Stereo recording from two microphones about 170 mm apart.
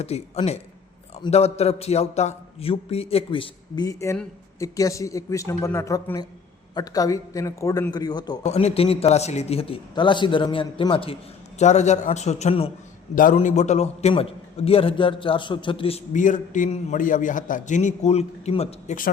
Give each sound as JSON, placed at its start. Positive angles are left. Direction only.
{"t": 0.0, "sound": "a man's voice", "side_deg": 40}
{"t": 8.4, "sound": "a man's voice", "side_deg": 35}
{"t": 11.6, "sound": "a man's voice", "side_deg": 45}
{"t": 16.1, "sound": "a man's voice", "side_deg": 50}